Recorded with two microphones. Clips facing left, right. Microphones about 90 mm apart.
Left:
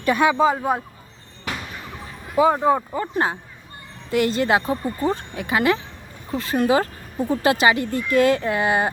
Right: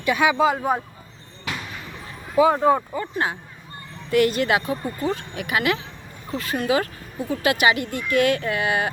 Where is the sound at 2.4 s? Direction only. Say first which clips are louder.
Even; 25° left (ahead or behind).